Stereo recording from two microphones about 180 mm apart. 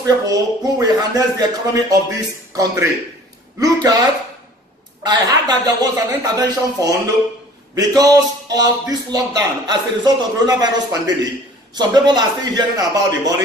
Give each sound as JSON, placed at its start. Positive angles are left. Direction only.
{"t": 0.0, "sound": "speech", "side_deg": -20}
{"t": 7.7, "sound": "speech", "side_deg": -20}